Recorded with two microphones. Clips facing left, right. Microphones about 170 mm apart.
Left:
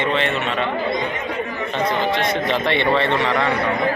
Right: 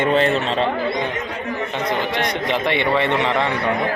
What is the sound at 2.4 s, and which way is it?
A man's voice, 15° right (ahead or behind).